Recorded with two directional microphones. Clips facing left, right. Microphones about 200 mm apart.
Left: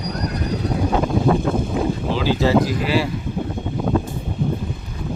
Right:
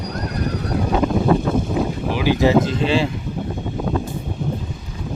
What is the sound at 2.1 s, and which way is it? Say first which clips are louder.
Speech: right 2 dB; 15° right (ahead or behind).